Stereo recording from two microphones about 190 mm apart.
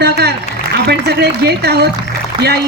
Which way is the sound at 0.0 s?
60° right (ahead or behind).